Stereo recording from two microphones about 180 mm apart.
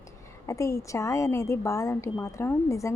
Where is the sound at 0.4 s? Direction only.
15° left (ahead or behind).